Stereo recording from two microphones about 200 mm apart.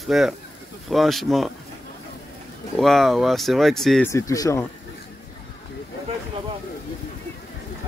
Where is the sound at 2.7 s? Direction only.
Centre (ahead or behind).